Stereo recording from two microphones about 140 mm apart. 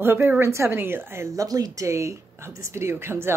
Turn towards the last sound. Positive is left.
turn(degrees=-20)  # may be behind; listen again after turning